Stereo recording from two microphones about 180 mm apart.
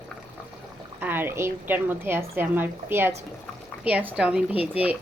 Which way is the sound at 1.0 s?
10° right (ahead or behind).